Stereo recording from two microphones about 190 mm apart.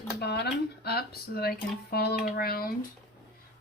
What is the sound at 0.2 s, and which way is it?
A woman's voice, 60° left (ahead or behind).